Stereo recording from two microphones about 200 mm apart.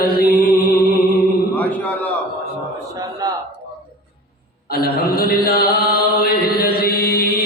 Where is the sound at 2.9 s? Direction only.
20° right (ahead or behind).